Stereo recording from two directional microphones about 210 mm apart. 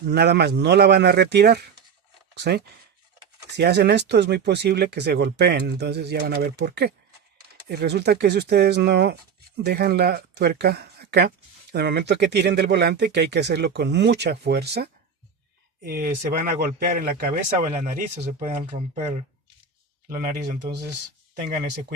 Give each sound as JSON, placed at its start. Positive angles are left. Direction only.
{"t": 0.0, "sound": "speech", "side_deg": -50}